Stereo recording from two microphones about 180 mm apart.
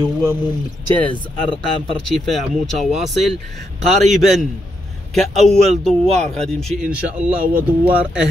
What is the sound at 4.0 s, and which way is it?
Speech, centre (ahead or behind).